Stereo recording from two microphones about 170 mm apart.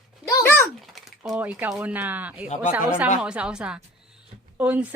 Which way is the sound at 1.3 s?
10° right (ahead or behind).